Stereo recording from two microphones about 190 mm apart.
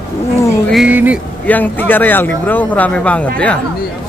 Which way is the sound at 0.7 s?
5° right (ahead or behind).